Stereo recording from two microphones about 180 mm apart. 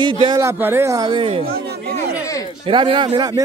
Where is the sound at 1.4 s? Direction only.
65° right (ahead or behind).